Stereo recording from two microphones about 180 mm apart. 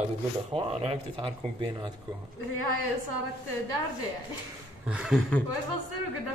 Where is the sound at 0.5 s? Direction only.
35° right (ahead or behind).